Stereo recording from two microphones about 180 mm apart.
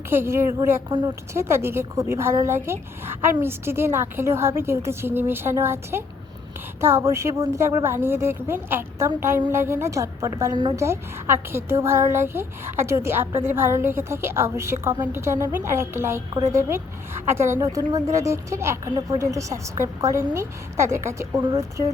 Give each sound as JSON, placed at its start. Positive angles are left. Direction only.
{"t": 0.1, "sound": "a woman's voice", "side_deg": -15}